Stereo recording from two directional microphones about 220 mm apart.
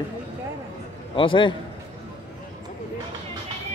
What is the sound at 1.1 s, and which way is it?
Speech, 25° left (ahead or behind).